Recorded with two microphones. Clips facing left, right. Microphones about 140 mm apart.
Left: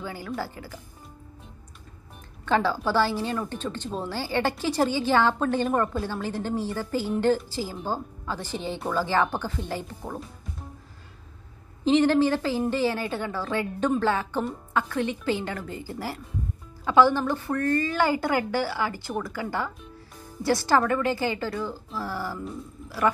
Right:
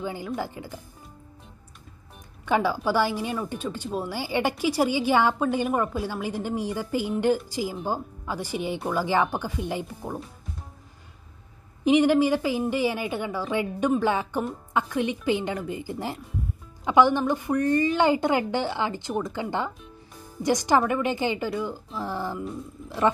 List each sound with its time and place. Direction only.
0.0 s a woman's voice: 20° right (ahead or behind)
2.4 s a woman's voice: 15° right (ahead or behind)
11.8 s a woman's voice: 15° right (ahead or behind)